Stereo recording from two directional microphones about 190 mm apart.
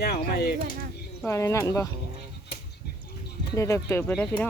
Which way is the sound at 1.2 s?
15° left (ahead or behind).